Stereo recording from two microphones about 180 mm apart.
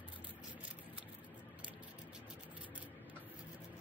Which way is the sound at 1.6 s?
5° right (ahead or behind).